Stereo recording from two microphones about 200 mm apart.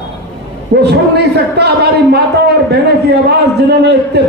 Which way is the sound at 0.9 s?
55° right (ahead or behind).